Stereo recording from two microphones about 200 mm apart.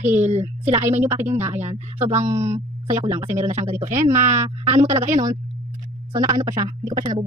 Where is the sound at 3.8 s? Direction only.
40° right (ahead or behind).